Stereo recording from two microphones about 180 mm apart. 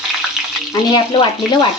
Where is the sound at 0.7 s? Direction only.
25° left (ahead or behind).